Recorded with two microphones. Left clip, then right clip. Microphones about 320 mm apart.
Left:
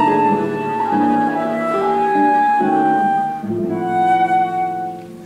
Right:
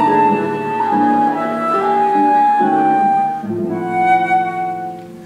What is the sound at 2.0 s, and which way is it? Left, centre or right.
Music, centre.